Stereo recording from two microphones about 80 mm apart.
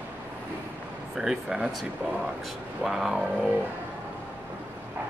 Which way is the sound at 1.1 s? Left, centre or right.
Centre.